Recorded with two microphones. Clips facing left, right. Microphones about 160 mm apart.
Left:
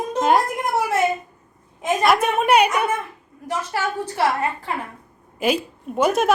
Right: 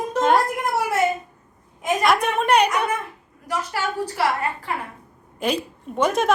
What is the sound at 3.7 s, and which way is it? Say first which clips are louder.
Speech: left 3 dB; 25° left (ahead or behind).